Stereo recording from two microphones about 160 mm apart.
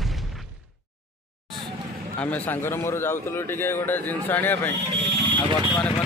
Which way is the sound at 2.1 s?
10° left (ahead or behind).